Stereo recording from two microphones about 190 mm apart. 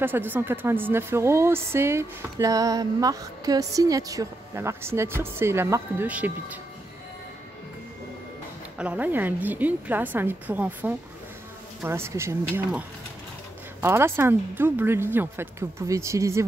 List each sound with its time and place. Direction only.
0.0 s speech: 10° right (ahead or behind)
8.7 s speech: 5° right (ahead or behind)